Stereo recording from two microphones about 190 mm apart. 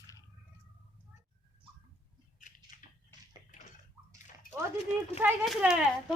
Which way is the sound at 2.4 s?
40° left (ahead or behind).